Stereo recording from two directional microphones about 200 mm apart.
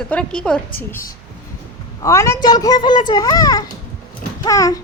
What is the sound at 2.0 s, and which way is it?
A child's voice, 15° left (ahead or behind).